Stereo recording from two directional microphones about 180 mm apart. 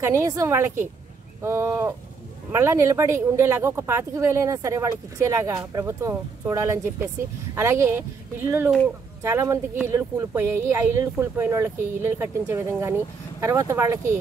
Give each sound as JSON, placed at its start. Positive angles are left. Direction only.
{"t": 0.0, "sound": "speech", "side_deg": -15}